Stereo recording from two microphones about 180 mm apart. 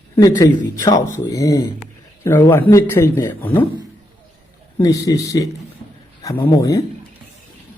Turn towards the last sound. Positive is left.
turn(degrees=20)  # may be behind; listen again after turning